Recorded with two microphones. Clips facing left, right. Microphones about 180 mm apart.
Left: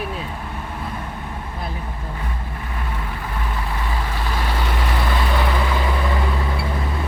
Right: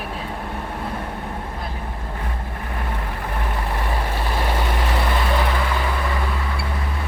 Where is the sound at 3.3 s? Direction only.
45° right (ahead or behind).